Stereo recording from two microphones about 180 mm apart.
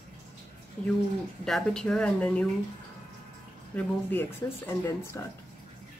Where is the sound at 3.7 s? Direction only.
10° left (ahead or behind).